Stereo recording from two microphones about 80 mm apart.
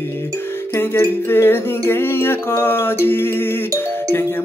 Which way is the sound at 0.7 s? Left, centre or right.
Left.